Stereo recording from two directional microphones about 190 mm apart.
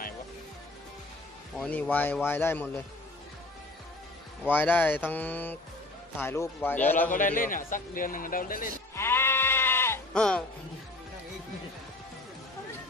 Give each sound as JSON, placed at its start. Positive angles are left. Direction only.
{"t": 1.5, "sound": "speech", "side_deg": 5}
{"t": 4.5, "sound": "speech", "side_deg": 10}
{"t": 7.1, "sound": "a man's voice", "side_deg": 45}
{"t": 8.9, "sound": "music", "side_deg": 10}